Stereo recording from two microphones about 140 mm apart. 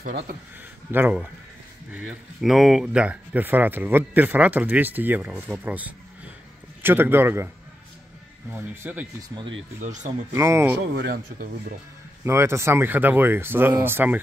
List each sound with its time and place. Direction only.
0.9 s speech: 15° right (ahead or behind)
9.8 s speech: 60° right (ahead or behind)
10.3 s speech: 20° right (ahead or behind)
12.3 s speech: 20° right (ahead or behind)